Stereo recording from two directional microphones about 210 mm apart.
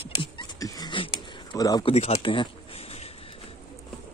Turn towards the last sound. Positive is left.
turn(degrees=30)  # may be behind; listen again after turning